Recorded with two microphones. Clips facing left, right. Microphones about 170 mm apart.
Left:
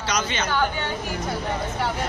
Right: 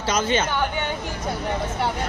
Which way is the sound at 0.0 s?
50° right (ahead or behind).